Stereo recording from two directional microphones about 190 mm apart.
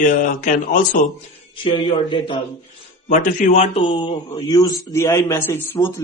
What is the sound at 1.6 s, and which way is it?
Speech, 25° left (ahead or behind).